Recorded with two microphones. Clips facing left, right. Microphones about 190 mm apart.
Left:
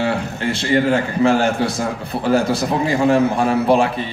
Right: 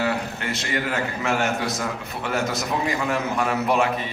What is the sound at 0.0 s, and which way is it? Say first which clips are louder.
A man's voice: left 5 dB; 30° left (ahead or behind).